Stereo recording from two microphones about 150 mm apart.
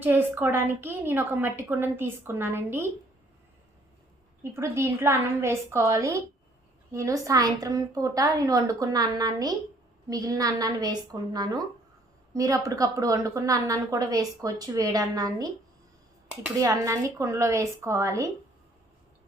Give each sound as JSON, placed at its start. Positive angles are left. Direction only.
{"t": 0.0, "sound": "a woman's voice", "side_deg": -10}
{"t": 4.5, "sound": "a woman's voice", "side_deg": -20}
{"t": 16.6, "sound": "a woman's voice", "side_deg": -20}